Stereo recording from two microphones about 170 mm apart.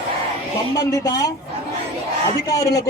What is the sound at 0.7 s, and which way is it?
Speech, 20° left (ahead or behind).